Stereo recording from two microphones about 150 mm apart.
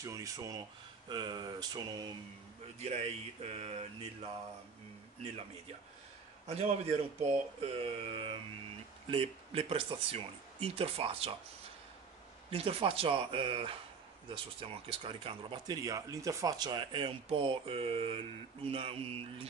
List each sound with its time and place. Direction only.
0.0 s speech: 20° right (ahead or behind)
2.8 s a sound: 45° right (ahead or behind)
6.5 s speech: 45° right (ahead or behind)
12.4 s speech: 40° right (ahead or behind)